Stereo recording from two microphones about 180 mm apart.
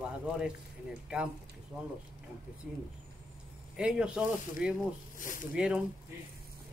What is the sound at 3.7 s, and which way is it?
Speech, 5° right (ahead or behind).